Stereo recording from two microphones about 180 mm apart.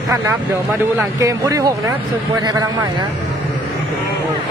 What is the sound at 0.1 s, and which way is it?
Speech, 15° right (ahead or behind).